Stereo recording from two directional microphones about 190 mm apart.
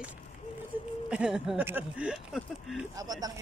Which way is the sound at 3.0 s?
20° right (ahead or behind).